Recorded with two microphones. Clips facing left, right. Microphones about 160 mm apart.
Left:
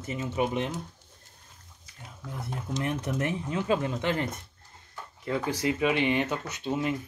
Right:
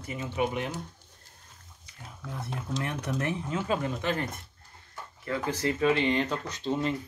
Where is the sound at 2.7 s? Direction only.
20° left (ahead or behind).